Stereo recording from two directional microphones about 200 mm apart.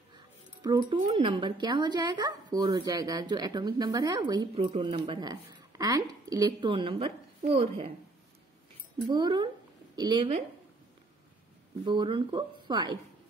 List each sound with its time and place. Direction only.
0.1 s a sound: 20° right (ahead or behind)
0.9 s speech: 35° right (ahead or behind)
1.3 s speech: 20° right (ahead or behind)
9.0 s speech: 20° right (ahead or behind)
11.8 s speech: 20° right (ahead or behind)